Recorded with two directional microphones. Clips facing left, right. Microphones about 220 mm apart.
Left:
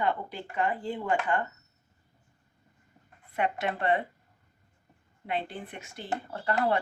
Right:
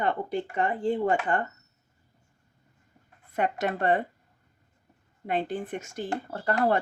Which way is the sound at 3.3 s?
45° right (ahead or behind).